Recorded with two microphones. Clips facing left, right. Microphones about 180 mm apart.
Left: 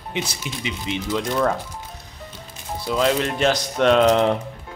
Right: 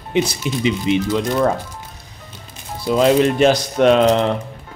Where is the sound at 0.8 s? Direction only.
10° right (ahead or behind).